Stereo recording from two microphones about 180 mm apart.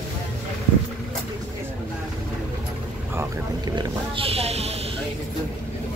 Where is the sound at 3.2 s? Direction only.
25° right (ahead or behind).